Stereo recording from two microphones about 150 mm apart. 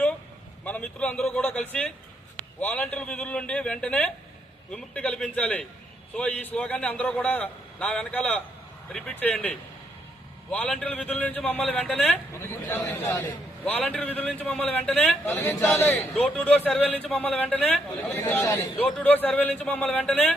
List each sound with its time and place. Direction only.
0.6 s a man's voice: 10° left (ahead or behind)